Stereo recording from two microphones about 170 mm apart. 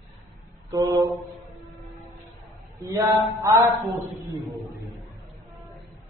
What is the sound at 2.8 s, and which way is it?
Mantra, 15° right (ahead or behind).